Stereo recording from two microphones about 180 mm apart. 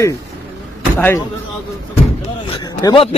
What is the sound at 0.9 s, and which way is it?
Speech, 10° left (ahead or behind).